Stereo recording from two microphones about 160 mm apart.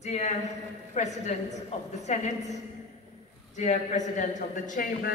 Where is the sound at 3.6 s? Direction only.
50° left (ahead or behind).